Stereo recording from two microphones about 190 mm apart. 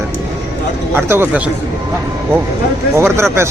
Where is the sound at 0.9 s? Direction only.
10° right (ahead or behind).